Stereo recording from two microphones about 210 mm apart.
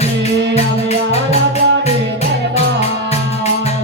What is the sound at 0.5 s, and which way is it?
Music, 30° left (ahead or behind).